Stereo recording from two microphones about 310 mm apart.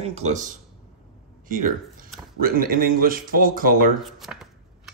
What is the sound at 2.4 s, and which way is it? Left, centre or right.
Speech, right.